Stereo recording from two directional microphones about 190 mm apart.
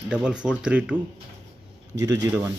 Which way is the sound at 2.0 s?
15° right (ahead or behind).